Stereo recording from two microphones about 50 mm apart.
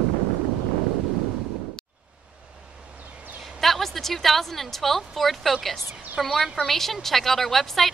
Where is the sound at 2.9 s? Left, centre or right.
Right.